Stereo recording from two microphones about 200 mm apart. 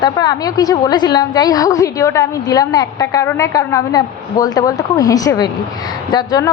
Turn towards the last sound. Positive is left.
turn(degrees=20)  # may be behind; listen again after turning